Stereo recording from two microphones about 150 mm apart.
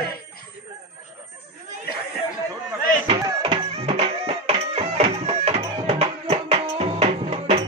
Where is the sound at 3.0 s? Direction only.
35° right (ahead or behind).